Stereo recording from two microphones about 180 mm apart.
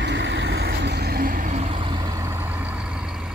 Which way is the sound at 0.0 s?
80° right.